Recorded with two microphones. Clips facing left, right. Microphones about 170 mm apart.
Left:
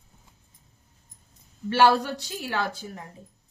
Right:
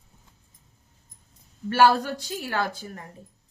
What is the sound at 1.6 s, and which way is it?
A woman's voice, 45° right (ahead or behind).